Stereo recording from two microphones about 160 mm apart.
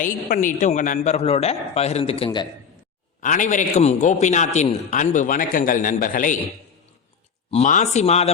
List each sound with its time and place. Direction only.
0.0 s a man's voice: 55° left (ahead or behind); by 2.5 s 30° left (ahead or behind)
3.2 s a man's voice: 55° left (ahead or behind)
7.5 s a man's voice: 45° left (ahead or behind)